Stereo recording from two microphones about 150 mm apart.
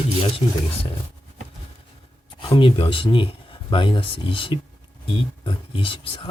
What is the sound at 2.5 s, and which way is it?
Speech, 35° left (ahead or behind).